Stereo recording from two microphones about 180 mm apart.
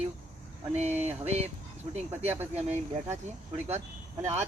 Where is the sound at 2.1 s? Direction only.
10° right (ahead or behind).